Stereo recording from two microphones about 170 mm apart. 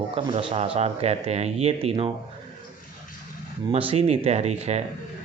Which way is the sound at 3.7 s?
35° right (ahead or behind).